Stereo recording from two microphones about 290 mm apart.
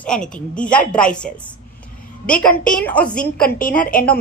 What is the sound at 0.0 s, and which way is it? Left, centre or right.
A woman's voice, centre.